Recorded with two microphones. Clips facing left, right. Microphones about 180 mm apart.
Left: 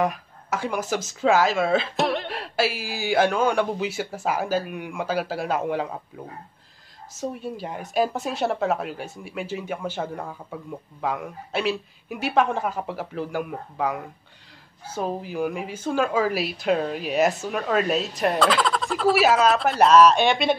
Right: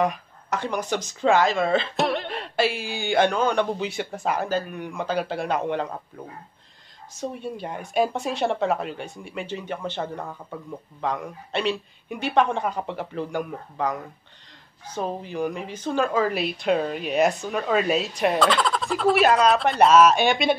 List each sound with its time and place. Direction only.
0.0 s speech: 5° left (ahead or behind)
7.2 s speech: 5° left (ahead or behind)